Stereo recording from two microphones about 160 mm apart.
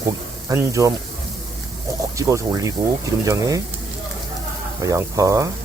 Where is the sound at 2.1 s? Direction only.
20° right (ahead or behind).